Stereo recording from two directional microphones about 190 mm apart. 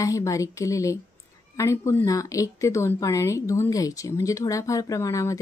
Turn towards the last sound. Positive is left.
turn(degrees=15)  # may be behind; listen again after turning